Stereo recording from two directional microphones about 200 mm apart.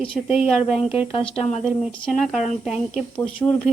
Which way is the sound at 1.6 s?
Centre (ahead or behind).